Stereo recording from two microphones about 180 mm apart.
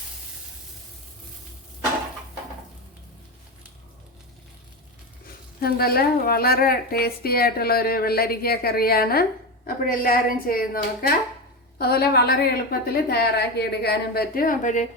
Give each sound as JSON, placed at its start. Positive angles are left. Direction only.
{"t": 5.5, "sound": "a woman's voice", "side_deg": 60}